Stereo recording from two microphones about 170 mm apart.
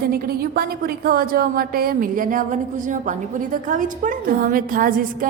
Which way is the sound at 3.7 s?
50° right (ahead or behind).